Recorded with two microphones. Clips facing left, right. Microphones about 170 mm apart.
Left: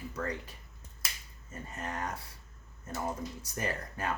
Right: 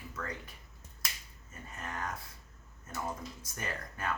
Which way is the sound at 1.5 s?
35° left (ahead or behind).